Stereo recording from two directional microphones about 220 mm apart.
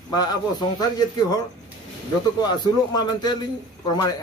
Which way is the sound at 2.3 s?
20° left (ahead or behind).